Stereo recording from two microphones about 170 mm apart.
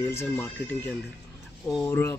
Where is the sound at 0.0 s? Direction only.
15° left (ahead or behind).